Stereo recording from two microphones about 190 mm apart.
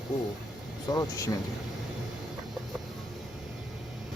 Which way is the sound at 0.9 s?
15° left (ahead or behind).